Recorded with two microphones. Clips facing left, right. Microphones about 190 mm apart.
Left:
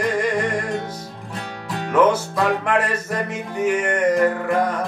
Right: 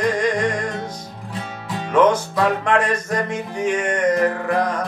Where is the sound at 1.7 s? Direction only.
5° left (ahead or behind).